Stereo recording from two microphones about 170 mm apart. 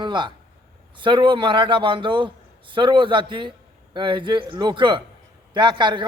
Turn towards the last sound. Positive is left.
turn(degrees=-25)  # may be behind; listen again after turning